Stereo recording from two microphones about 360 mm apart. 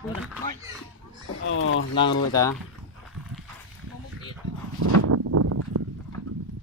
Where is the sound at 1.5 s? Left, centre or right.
Left.